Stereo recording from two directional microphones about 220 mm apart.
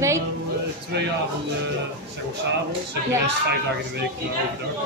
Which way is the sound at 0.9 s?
50° right (ahead or behind).